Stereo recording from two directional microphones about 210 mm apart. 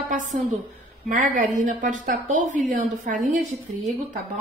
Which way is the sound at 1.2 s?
35° right (ahead or behind).